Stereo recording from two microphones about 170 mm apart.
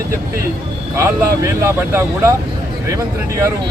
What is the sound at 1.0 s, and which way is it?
Speech, 15° right (ahead or behind).